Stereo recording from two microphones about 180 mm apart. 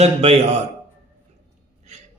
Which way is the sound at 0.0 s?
35° right (ahead or behind).